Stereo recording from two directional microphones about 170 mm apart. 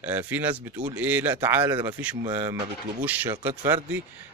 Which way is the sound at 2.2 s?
25° right (ahead or behind).